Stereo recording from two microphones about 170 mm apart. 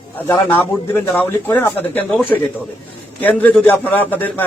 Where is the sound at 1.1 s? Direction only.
10° left (ahead or behind).